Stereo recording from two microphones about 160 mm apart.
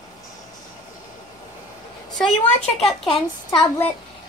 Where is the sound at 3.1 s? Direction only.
30° left (ahead or behind).